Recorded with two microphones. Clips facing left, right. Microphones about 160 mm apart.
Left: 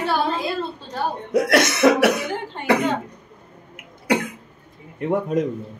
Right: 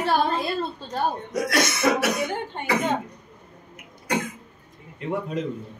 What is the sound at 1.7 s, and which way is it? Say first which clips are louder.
Cough: left 6 dB; 65° left (ahead or behind).